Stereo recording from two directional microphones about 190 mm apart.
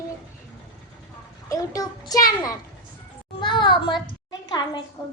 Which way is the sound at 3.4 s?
25° left (ahead or behind).